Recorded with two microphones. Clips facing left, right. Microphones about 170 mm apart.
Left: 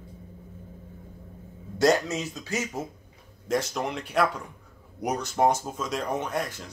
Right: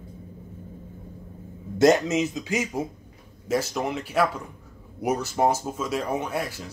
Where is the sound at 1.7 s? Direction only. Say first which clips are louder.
Right 4 dB; 20° right (ahead or behind).